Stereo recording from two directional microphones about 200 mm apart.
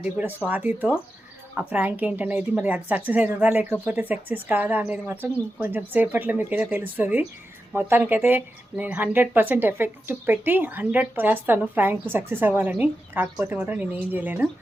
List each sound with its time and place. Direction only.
0.0 s speech: 10° right (ahead or behind)